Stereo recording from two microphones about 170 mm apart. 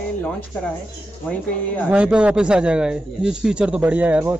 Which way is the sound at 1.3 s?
10° left (ahead or behind).